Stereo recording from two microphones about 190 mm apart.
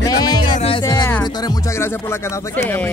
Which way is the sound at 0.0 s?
20° left (ahead or behind).